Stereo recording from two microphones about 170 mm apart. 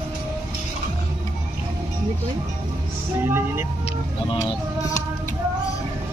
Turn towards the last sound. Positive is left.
turn(degrees=20)  # may be behind; listen again after turning